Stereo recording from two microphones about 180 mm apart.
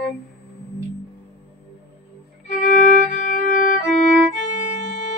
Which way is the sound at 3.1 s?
45° left (ahead or behind).